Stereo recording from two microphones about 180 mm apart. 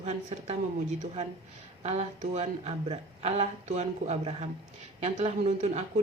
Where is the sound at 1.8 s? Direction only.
35° right (ahead or behind).